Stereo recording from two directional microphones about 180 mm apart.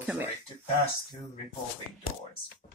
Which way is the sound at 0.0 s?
5° right (ahead or behind).